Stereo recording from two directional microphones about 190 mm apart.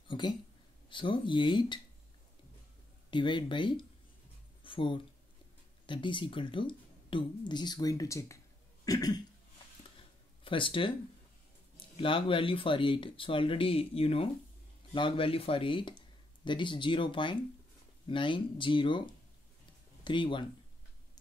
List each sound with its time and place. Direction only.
0.1 s a sound: 25° left (ahead or behind)
0.8 s speech: 25° left (ahead or behind)
3.1 s speech: 25° left (ahead or behind)
8.8 s cough: 20° left (ahead or behind)
9.9 s a sound: 25° left (ahead or behind)
11.7 s speech: 25° left (ahead or behind)